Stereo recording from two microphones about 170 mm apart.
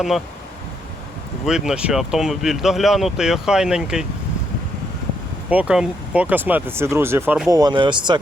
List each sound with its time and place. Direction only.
1.5 s speech: 5° right (ahead or behind)
5.5 s speech: 5° right (ahead or behind)
7.5 s speech: 25° right (ahead or behind)